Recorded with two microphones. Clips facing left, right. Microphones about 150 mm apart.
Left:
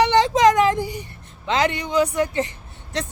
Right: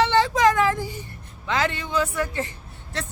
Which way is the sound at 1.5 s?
20° left (ahead or behind).